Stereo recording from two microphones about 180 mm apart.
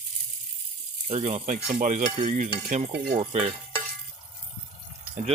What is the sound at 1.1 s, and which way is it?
Speech, 35° right (ahead or behind).